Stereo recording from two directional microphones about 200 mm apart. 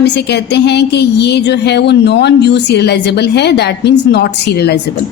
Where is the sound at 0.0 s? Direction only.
55° left (ahead or behind).